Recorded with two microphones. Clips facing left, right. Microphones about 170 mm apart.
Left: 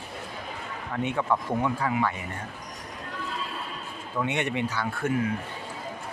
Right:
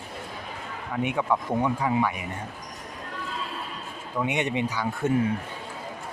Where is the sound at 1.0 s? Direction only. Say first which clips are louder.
Right 1 dB; 15° right (ahead or behind).